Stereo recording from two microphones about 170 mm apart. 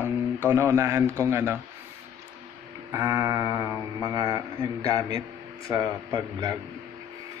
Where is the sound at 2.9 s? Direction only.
15° right (ahead or behind).